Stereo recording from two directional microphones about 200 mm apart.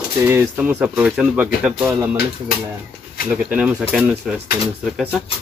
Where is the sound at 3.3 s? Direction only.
5° right (ahead or behind).